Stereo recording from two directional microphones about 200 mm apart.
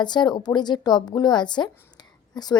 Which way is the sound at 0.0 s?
20° left (ahead or behind).